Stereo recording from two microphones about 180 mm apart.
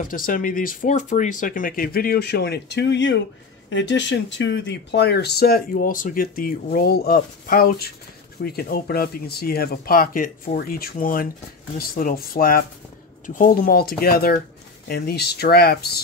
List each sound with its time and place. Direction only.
0.0 s speech: 50° left (ahead or behind); by 3.2 s 80° left
3.7 s speech: 90° left; by 16.0 s 60° left (ahead or behind)